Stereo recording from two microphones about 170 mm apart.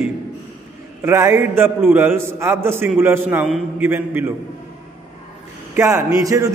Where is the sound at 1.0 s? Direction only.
15° right (ahead or behind).